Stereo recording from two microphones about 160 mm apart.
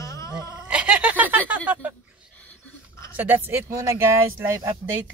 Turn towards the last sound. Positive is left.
turn(degrees=-15)  # may be behind; listen again after turning